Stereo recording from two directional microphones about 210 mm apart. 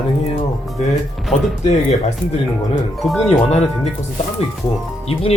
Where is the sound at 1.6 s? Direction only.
30° left (ahead or behind).